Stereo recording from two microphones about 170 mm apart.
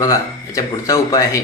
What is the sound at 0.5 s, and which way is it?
Speech, 20° left (ahead or behind).